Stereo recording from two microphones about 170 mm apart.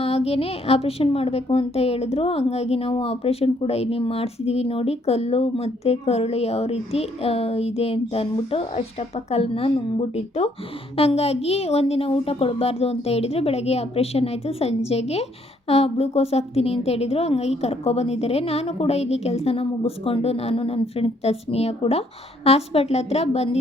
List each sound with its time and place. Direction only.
0.0 s a woman's voice: 35° left (ahead or behind)